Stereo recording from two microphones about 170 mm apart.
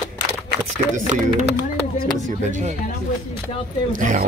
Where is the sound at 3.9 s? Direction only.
50° right (ahead or behind).